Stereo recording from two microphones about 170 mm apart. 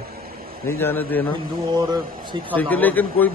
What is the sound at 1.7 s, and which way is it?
Speech, 25° right (ahead or behind).